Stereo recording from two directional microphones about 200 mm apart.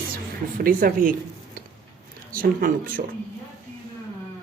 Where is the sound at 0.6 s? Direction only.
45° right (ahead or behind).